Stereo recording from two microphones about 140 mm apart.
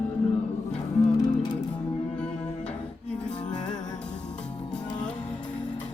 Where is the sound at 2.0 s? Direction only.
5° left (ahead or behind).